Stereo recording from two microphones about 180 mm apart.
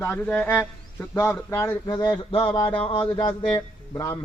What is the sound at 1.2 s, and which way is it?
A man's voice, 15° left (ahead or behind).